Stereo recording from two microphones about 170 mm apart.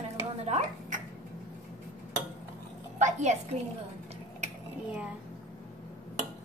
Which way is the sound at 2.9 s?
45° right (ahead or behind).